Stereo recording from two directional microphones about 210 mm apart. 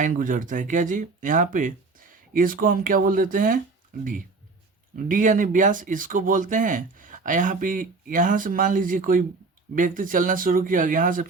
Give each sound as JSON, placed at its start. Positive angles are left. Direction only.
{"t": 0.0, "sound": "speech", "side_deg": -40}